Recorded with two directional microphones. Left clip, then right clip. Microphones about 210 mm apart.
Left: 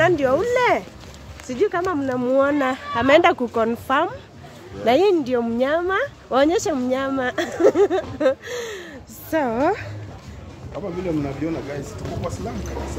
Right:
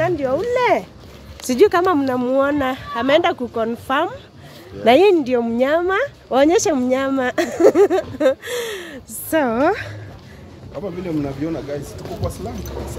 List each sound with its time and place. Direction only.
0.0 s speech: 5° left (ahead or behind)
0.5 s speech: 20° right (ahead or behind)
1.5 s speech: 50° right (ahead or behind)
2.2 s speech: 10° right (ahead or behind)
3.9 s speech: 10° right (ahead or behind)
4.8 s speech: 20° right (ahead or behind)
11.4 s speech: 40° right (ahead or behind)